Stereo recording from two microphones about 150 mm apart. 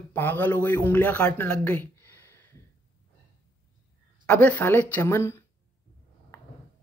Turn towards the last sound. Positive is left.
turn(degrees=15)  # may be behind; listen again after turning